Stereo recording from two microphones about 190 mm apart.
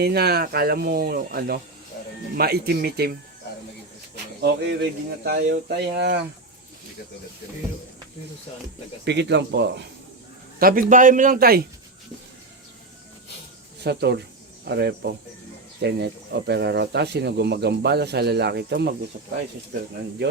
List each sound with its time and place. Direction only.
0.0 s speech: 55° right (ahead or behind)
4.4 s speech: 55° right (ahead or behind)
9.0 s speech: 65° right (ahead or behind)
10.6 s speech: 50° right (ahead or behind)
13.8 s speech: 60° right (ahead or behind)